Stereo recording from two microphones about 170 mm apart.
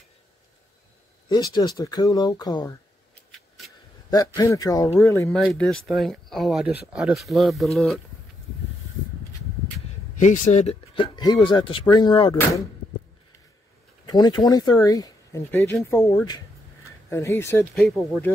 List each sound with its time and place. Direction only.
1.3 s speech: 25° left (ahead or behind)
3.3 s a sound: centre (ahead or behind)
4.1 s speech: 20° left (ahead or behind)
5.4 s speech: centre (ahead or behind)
10.1 s a man's voice: 50° left (ahead or behind)
11.0 s speech: 25° left (ahead or behind)
14.0 s speech: 25° left (ahead or behind)
17.7 s speech: centre (ahead or behind)